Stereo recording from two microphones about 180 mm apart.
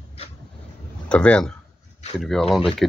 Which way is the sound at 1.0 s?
5° left (ahead or behind).